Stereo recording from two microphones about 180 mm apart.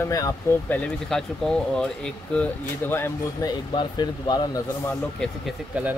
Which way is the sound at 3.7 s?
25° left (ahead or behind).